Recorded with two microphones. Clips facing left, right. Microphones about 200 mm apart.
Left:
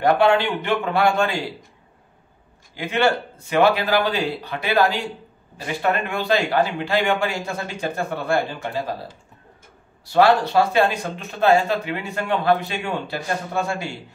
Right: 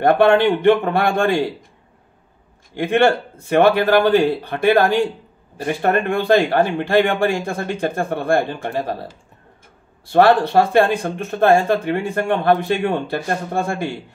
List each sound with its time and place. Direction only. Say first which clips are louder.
0.0 s speech: right 4 dB; 55° right (ahead or behind)
2.7 s speech: right 5 dB; 55° right (ahead or behind)
10.0 s speech: right 3 dB; 55° right (ahead or behind)